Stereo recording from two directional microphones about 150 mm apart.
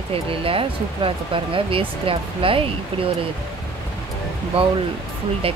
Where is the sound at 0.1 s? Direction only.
40° right (ahead or behind).